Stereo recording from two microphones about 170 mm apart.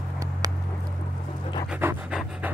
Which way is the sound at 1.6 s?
5° right (ahead or behind).